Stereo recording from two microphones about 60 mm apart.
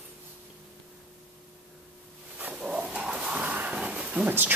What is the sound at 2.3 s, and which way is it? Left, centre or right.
Dog, right.